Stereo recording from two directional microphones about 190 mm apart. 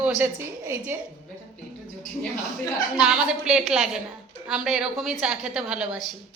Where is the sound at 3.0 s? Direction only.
5° right (ahead or behind).